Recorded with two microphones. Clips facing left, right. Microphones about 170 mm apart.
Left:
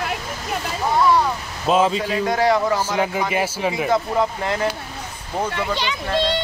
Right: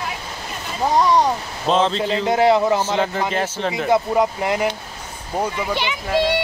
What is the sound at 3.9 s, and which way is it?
Speech, 15° right (ahead or behind).